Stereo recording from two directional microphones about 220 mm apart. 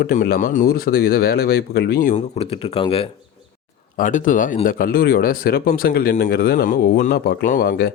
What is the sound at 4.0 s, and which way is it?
Speech, 35° left (ahead or behind).